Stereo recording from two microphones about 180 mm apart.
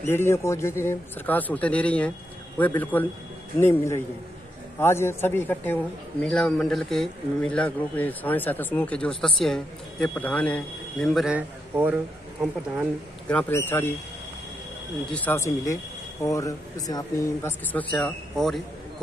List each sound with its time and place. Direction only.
0.0 s a man's voice: 15° left (ahead or behind); by 12.8 s 5° right (ahead or behind)
13.3 s speech: 10° left (ahead or behind)
15.0 s speech: 10° left (ahead or behind)
17.9 s a man's voice: centre (ahead or behind)